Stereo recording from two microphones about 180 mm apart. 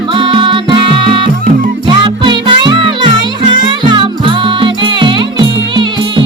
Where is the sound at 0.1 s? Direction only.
25° right (ahead or behind).